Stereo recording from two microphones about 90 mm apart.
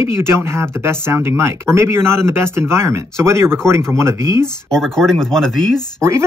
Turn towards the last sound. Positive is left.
turn(degrees=-35)  # may be behind; listen again after turning